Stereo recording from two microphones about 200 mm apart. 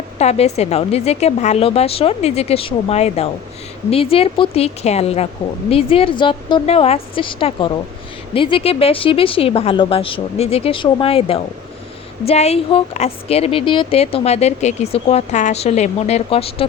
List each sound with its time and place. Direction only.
0.2 s a woman's voice: 35° left (ahead or behind)